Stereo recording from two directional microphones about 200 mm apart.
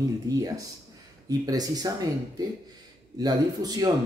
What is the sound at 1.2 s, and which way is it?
Speech, 20° right (ahead or behind).